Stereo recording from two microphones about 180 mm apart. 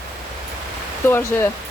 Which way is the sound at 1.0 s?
10° left (ahead or behind).